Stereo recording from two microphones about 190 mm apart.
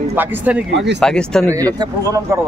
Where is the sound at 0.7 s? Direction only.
65° right (ahead or behind).